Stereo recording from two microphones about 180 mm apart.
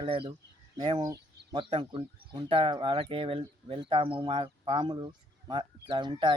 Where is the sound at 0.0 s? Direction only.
25° right (ahead or behind).